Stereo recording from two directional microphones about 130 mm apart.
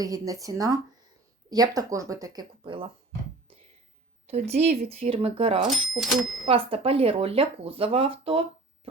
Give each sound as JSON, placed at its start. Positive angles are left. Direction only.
{"t": 0.0, "sound": "speech", "side_deg": -25}
{"t": 4.3, "sound": "speech", "side_deg": -55}
{"t": 6.0, "sound": "speech", "side_deg": 0}
{"t": 6.4, "sound": "speech", "side_deg": -45}